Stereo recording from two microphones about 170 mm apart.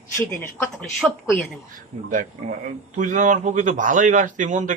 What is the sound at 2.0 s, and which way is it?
Speech, 50° right (ahead or behind).